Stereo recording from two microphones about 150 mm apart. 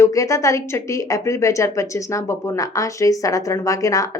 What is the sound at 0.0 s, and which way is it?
A woman's voice, 20° left (ahead or behind).